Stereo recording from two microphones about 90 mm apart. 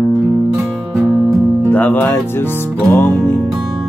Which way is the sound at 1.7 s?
15° left (ahead or behind).